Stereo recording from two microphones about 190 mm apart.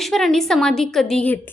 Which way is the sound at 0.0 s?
Centre (ahead or behind).